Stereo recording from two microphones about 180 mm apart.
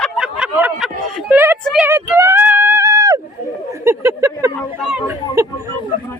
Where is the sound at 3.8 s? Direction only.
15° right (ahead or behind).